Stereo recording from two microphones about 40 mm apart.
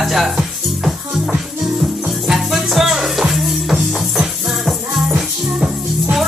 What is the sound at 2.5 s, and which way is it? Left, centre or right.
Music, centre.